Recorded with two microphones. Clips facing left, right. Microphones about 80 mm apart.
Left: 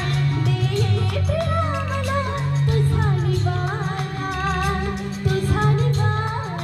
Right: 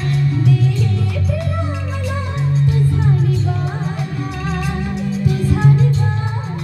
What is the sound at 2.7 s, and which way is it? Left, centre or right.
Music, left.